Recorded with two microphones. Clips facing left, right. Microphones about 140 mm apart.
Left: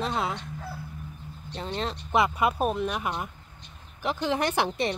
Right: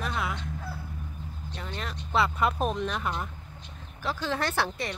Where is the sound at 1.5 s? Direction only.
25° left (ahead or behind).